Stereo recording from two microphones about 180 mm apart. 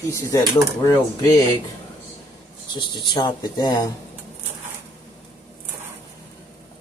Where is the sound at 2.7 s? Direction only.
25° left (ahead or behind).